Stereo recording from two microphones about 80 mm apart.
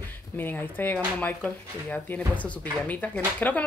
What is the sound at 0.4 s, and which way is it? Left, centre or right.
Speech, left.